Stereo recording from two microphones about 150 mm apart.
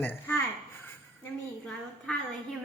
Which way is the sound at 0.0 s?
10° left (ahead or behind).